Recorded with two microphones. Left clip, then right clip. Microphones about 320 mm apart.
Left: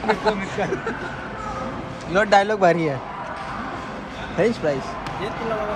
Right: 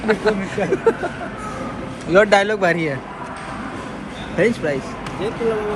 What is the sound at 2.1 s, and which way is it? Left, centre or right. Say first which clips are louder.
Speech: right 3 dB; centre.